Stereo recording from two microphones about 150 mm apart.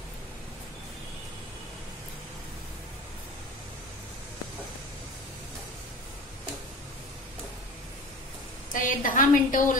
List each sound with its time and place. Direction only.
8.8 s a woman's voice: 60° left (ahead or behind)